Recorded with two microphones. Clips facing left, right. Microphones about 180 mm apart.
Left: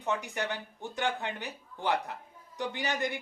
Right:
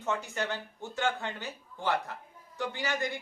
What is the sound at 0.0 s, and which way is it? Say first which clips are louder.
Speech: even; 15° left (ahead or behind).